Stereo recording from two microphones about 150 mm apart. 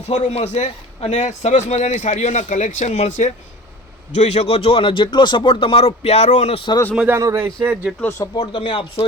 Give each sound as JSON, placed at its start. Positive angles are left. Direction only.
{"t": 0.1, "sound": "a man's voice", "side_deg": 50}
{"t": 6.9, "sound": "speech", "side_deg": -10}
{"t": 7.2, "sound": "speech", "side_deg": -20}
{"t": 8.4, "sound": "speech", "side_deg": 35}